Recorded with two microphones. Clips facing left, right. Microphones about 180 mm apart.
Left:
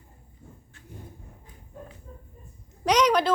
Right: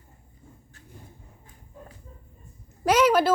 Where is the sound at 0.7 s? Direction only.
40° right (ahead or behind).